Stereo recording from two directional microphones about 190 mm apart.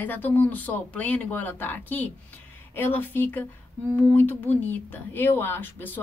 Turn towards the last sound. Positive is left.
turn(degrees=10)  # may be behind; listen again after turning